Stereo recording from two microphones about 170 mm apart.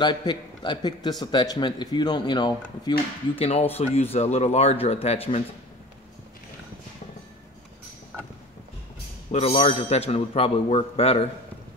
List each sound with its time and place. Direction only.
0.0 s a man's voice: 25° left (ahead or behind)
9.3 s speech: 35° left (ahead or behind)